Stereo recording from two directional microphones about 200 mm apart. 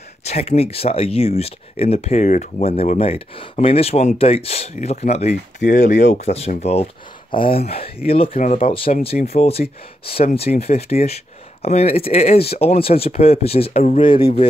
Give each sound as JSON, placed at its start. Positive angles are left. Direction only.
{"t": 0.3, "sound": "speech", "side_deg": 30}